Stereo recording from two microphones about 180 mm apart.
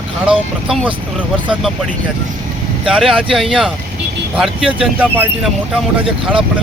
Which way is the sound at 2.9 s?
5° right (ahead or behind).